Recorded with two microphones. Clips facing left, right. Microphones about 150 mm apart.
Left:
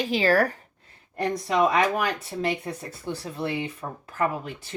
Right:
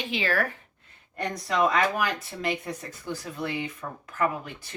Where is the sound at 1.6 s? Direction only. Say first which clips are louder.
Left 2 dB; 30° left (ahead or behind).